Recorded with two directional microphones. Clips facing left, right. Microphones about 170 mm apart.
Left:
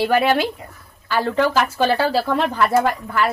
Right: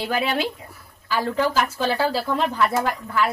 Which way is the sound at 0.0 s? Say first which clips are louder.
Left 6 dB; 65° left (ahead or behind).